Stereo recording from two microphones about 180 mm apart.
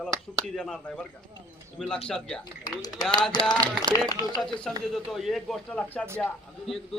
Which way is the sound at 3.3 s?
25° left (ahead or behind).